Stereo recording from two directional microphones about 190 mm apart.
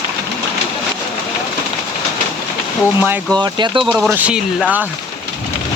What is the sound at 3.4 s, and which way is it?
Speech, 25° right (ahead or behind).